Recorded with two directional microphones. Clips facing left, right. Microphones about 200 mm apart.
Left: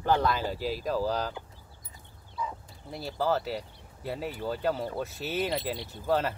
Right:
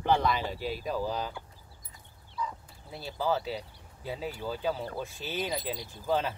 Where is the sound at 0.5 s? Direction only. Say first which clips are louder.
Left 2 dB; 40° left (ahead or behind).